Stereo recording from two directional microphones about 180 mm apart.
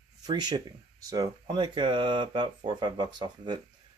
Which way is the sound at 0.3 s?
25° right (ahead or behind).